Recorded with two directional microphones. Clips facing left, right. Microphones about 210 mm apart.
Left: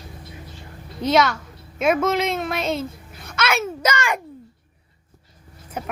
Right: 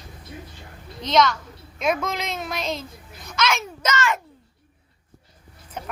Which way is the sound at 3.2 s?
55° left (ahead or behind).